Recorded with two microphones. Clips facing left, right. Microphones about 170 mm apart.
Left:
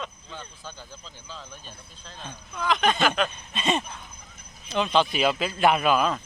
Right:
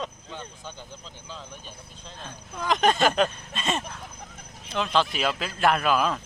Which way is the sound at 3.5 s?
Centre (ahead or behind).